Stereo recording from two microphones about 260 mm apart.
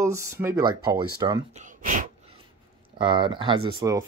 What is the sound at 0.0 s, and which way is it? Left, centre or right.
Speech, centre.